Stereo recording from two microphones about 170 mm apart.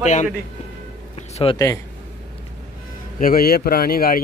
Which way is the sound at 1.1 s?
40° left (ahead or behind).